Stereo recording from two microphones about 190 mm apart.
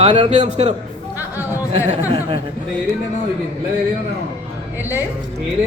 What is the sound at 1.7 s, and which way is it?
Speech, 30° right (ahead or behind).